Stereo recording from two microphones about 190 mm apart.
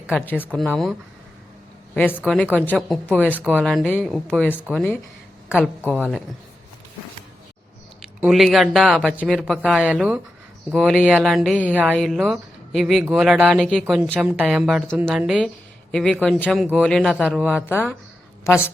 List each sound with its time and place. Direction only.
0.3 s a woman's voice: 10° left (ahead or behind)
2.0 s a woman's voice: 5° left (ahead or behind)
3.2 s speech: 10° right (ahead or behind)
3.5 s speech: centre (ahead or behind)
8.0 s speech: centre (ahead or behind)
18.5 s a woman's voice: 15° left (ahead or behind)